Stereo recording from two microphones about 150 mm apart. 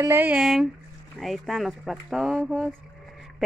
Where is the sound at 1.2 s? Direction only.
Centre (ahead or behind).